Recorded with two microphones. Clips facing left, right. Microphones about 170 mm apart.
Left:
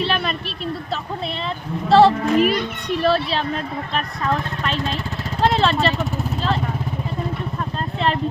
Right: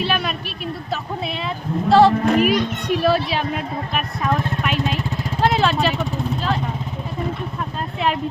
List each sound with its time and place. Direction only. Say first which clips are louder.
0.0 s a sound: even; 5° right (ahead or behind)
1.9 s music: even; centre (ahead or behind)
3.0 s speech: left 1 dB; 10° right (ahead or behind)
5.4 s vehicle: even; 5° right (ahead or behind)